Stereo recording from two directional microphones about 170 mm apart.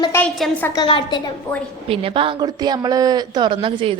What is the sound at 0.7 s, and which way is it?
Speech, 30° left (ahead or behind).